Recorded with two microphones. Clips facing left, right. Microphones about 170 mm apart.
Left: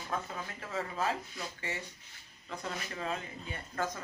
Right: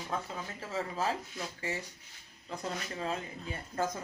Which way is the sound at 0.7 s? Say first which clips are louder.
Right 1 dB; 30° right (ahead or behind).